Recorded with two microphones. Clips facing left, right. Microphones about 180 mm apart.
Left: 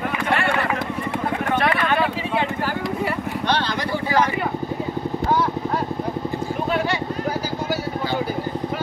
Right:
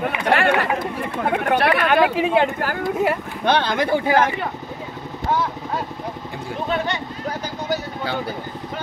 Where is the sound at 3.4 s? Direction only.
50° right (ahead or behind).